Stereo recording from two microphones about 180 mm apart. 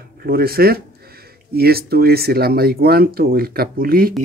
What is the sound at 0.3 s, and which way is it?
Speech, 55° right (ahead or behind).